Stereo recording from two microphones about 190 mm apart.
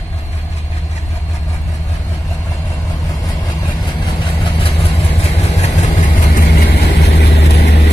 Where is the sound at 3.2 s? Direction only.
25° left (ahead or behind).